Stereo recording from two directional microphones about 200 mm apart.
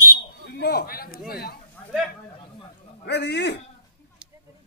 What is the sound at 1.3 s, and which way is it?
Speech, 50° left (ahead or behind).